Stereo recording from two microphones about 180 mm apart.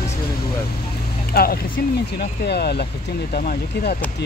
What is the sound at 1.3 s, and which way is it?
Speech, 60° left (ahead or behind).